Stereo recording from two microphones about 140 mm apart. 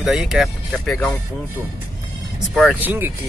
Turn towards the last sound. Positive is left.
turn(degrees=-15)  # may be behind; listen again after turning